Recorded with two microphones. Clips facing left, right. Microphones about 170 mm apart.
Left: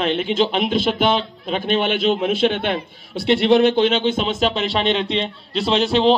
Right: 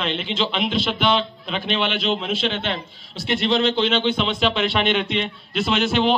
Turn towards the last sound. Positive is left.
turn(degrees=30)  # may be behind; listen again after turning